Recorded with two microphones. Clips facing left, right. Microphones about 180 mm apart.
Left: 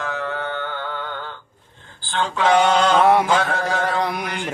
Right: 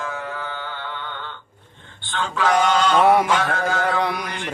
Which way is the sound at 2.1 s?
30° left (ahead or behind).